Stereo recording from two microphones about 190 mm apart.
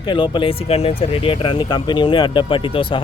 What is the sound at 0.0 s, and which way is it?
Speech, 25° left (ahead or behind).